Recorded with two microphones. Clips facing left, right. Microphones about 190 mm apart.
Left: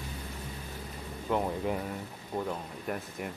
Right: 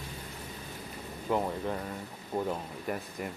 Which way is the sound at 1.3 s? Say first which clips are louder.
Left 1 dB; centre (ahead or behind).